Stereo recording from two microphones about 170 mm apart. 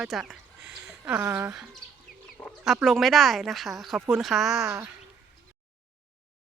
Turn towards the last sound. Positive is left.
turn(degrees=-15)  # may be behind; listen again after turning